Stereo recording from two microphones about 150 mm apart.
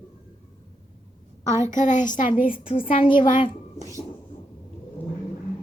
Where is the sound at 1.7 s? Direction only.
55° left (ahead or behind).